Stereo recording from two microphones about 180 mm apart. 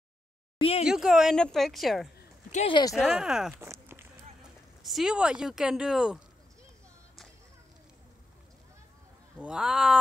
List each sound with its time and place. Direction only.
0.6 s speech: 35° left (ahead or behind)
0.8 s a woman's voice: 5° right (ahead or behind)
2.5 s speech: 35° left (ahead or behind)
2.9 s a woman's voice: 5° right (ahead or behind)
3.6 s walk: 15° right (ahead or behind)
4.4 s speech: centre (ahead or behind)
9.4 s a woman's voice: 5° right (ahead or behind)